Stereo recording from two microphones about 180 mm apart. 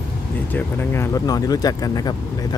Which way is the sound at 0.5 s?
10° left (ahead or behind).